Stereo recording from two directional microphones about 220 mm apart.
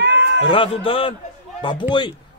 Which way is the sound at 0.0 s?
50° right (ahead or behind).